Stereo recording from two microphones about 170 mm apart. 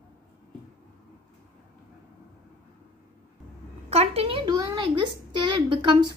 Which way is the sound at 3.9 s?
35° right (ahead or behind).